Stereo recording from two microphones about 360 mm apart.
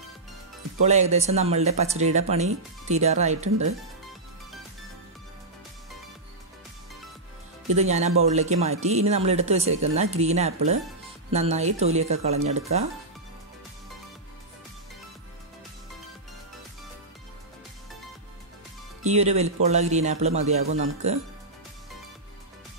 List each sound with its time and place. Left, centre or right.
0.8 s speech: centre
7.7 s speech: centre
19.0 s speech: centre